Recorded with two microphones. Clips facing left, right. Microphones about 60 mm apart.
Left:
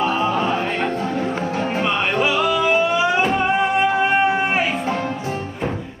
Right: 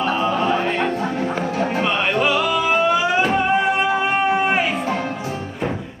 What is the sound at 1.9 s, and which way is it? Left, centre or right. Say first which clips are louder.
Music: even; centre.